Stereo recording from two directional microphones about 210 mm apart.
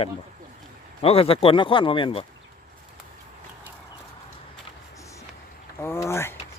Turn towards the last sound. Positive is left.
turn(degrees=10)  # may be behind; listen again after turning